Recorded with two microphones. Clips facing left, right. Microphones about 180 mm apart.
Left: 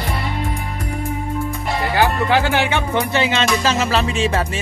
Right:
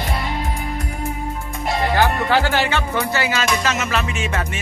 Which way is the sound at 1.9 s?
15° left (ahead or behind).